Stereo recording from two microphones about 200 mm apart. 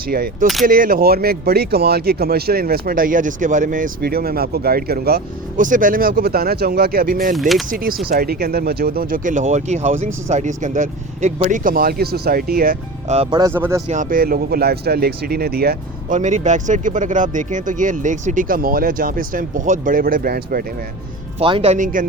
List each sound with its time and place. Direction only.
0.1 s speech: 50° right (ahead or behind)
7.3 s speech: centre (ahead or behind)
7.7 s speech: 45° right (ahead or behind)
13.1 s speech: 30° right (ahead or behind)
13.4 s speech: 10° right (ahead or behind)
13.8 s speech: 40° right (ahead or behind)
21.3 s speech: 30° right (ahead or behind)